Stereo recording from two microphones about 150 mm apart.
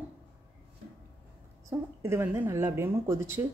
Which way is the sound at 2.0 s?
15° right (ahead or behind).